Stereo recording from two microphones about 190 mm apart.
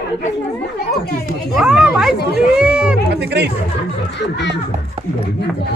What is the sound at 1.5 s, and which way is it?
Speech, 5° right (ahead or behind).